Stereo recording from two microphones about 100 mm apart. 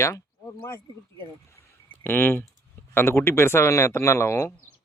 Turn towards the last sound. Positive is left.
turn(degrees=25)  # may be behind; listen again after turning